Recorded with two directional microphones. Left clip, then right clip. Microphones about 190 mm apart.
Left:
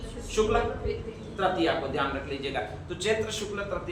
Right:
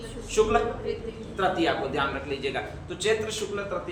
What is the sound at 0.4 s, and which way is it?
A man's voice, 20° right (ahead or behind).